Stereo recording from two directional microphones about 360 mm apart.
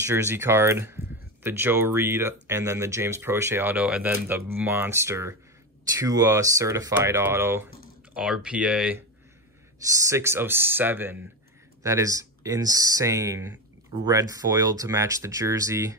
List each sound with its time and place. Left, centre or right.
0.0 s speech: centre